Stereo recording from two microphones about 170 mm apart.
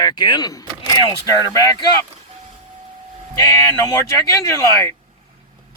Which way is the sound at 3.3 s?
20° left (ahead or behind).